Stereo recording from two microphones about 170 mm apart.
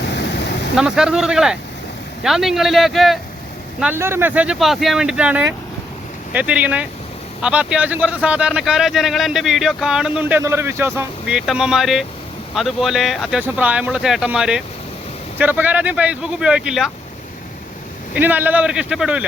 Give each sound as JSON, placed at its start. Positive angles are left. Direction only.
{"t": 0.0, "sound": "a sound", "side_deg": 85}
{"t": 0.8, "sound": "speech", "side_deg": -5}
{"t": 3.8, "sound": "speech", "side_deg": -10}
{"t": 18.1, "sound": "speech", "side_deg": -10}